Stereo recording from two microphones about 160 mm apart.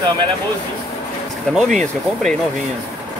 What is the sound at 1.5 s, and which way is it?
Speech, centre (ahead or behind).